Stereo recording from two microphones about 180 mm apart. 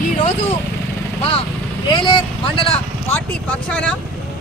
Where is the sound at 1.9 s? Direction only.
25° left (ahead or behind).